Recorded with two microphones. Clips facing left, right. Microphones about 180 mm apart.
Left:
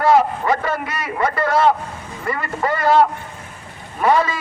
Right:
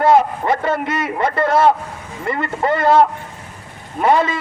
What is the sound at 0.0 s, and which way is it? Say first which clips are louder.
A man's voice: right 1 dB; 25° right (ahead or behind).